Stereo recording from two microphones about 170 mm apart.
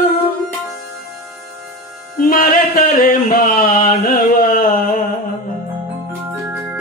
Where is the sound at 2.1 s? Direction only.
55° left (ahead or behind).